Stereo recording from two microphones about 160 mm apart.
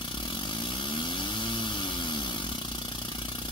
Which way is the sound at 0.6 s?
30° left (ahead or behind).